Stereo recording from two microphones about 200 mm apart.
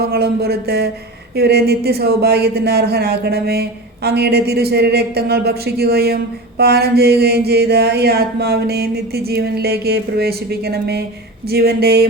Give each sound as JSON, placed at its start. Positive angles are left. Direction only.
{"t": 0.0, "sound": "speech", "side_deg": -50}